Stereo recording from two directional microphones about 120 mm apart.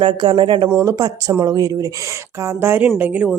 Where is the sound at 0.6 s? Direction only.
20° right (ahead or behind).